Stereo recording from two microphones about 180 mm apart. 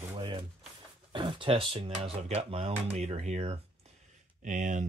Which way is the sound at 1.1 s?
25° right (ahead or behind).